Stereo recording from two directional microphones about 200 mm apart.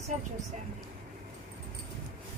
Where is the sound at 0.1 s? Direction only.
35° right (ahead or behind).